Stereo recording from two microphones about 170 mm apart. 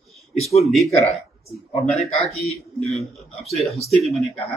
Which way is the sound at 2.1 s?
40° left (ahead or behind).